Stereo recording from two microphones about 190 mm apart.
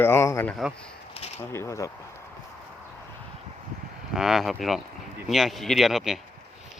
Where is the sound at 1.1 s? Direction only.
30° left (ahead or behind).